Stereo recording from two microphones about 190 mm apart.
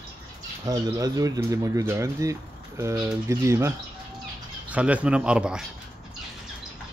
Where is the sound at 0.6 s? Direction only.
20° right (ahead or behind).